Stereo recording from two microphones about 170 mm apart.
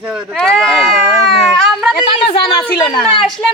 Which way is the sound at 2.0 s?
30° left (ahead or behind).